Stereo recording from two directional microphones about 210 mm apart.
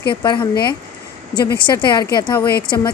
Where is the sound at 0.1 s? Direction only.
20° left (ahead or behind).